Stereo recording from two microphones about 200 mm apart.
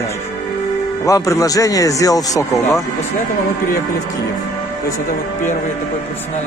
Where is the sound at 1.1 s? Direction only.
15° left (ahead or behind).